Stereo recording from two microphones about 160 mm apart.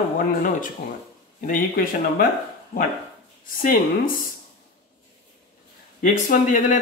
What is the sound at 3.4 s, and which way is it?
Speech, 60° left (ahead or behind).